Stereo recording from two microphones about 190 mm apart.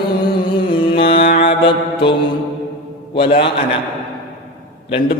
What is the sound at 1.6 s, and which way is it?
Mantra, 25° left (ahead or behind).